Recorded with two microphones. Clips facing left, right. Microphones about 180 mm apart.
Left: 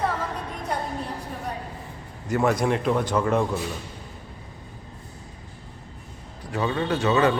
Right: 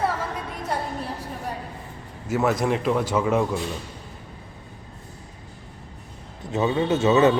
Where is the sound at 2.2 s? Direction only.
5° right (ahead or behind).